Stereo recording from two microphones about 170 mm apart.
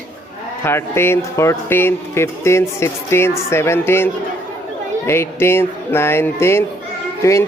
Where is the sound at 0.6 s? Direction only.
15° left (ahead or behind).